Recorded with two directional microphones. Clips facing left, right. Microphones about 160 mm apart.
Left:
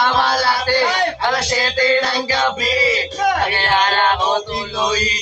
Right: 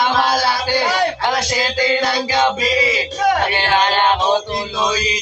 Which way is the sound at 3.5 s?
20° right (ahead or behind).